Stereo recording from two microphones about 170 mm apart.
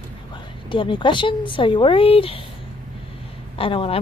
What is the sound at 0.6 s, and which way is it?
Speech, 30° left (ahead or behind).